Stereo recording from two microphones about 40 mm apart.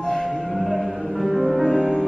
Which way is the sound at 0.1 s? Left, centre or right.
Centre.